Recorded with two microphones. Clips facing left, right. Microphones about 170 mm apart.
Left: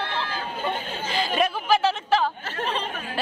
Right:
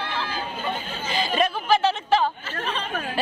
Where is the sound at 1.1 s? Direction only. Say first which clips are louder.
Right 1 dB; centre (ahead or behind).